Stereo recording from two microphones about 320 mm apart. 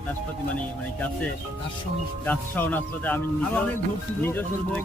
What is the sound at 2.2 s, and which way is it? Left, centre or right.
Speech, centre.